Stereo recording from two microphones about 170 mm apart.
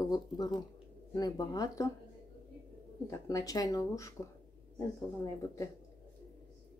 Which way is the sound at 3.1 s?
20° left (ahead or behind).